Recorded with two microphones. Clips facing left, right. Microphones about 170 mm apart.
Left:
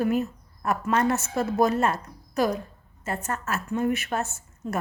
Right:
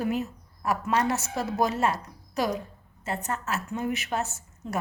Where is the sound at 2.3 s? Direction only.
15° right (ahead or behind).